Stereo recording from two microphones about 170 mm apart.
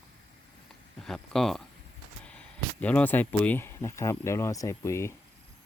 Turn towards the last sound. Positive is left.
turn(degrees=15)  # may be behind; listen again after turning